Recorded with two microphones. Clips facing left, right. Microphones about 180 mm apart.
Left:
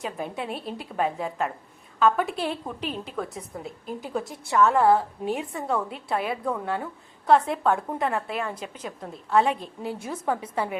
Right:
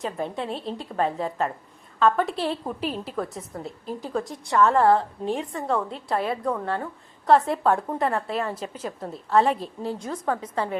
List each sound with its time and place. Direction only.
0.0 s a woman's voice: 5° left (ahead or behind)
0.5 s a woman's voice: 25° right (ahead or behind)
0.9 s a woman's voice: 5° left (ahead or behind)